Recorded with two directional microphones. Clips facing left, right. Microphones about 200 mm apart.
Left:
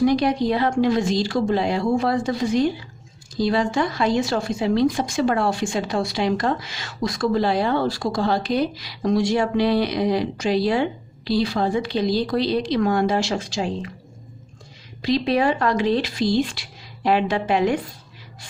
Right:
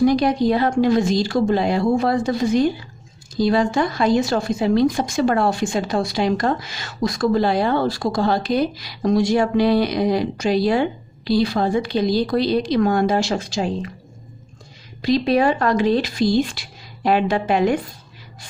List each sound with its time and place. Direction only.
0.0 s speech: 40° right (ahead or behind)
15.0 s speech: 45° right (ahead or behind)